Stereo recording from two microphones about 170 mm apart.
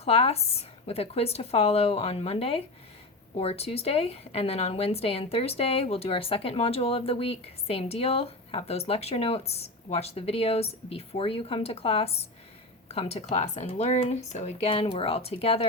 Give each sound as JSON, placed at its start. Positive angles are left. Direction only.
{"t": 0.0, "sound": "a woman's voice", "side_deg": 35}